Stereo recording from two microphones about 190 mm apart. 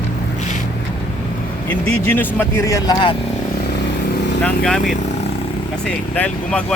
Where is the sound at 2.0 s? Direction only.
10° left (ahead or behind).